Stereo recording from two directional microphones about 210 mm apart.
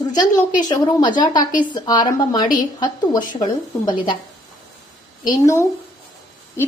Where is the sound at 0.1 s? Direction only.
20° left (ahead or behind).